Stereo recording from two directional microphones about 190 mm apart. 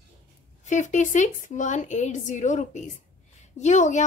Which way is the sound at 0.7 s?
40° left (ahead or behind).